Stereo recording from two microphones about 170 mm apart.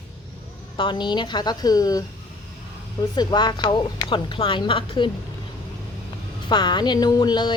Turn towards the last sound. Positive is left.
turn(degrees=25)  # may be behind; listen again after turning